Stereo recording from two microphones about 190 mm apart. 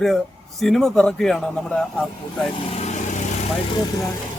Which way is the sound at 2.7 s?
35° left (ahead or behind).